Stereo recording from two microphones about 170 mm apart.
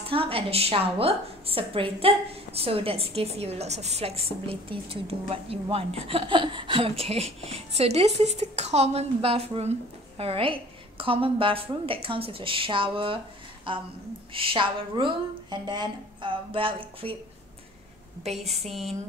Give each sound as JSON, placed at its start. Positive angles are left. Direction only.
{"t": 0.1, "sound": "a woman's voice", "side_deg": -35}
{"t": 18.3, "sound": "a woman's voice", "side_deg": -40}